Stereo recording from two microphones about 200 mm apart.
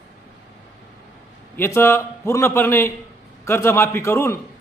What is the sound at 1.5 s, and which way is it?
A man's voice, 10° left (ahead or behind).